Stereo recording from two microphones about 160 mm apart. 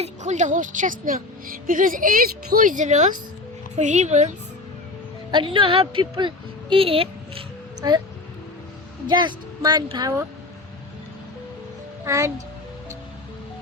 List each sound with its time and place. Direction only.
0.0 s a woman's voice: 50° right (ahead or behind)
5.3 s speech: 30° right (ahead or behind)
9.0 s speech: 30° right (ahead or behind)
12.0 s speech: 20° right (ahead or behind)